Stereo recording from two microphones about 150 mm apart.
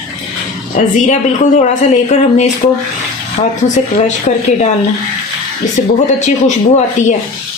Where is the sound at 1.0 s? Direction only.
55° left (ahead or behind).